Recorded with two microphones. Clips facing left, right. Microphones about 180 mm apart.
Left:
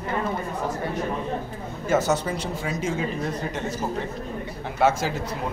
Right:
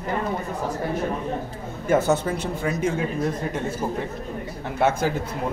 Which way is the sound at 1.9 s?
55° right (ahead or behind).